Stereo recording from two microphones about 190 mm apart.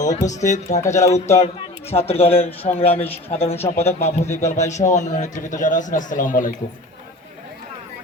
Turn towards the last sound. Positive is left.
turn(degrees=45)  # may be behind; listen again after turning